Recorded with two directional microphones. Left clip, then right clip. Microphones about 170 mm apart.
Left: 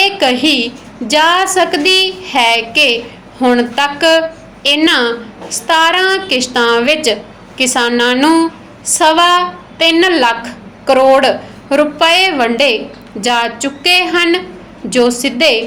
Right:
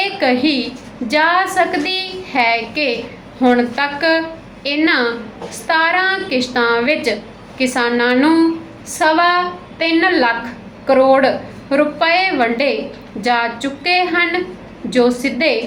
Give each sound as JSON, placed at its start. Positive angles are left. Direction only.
{"t": 0.0, "sound": "a woman's voice", "side_deg": 50}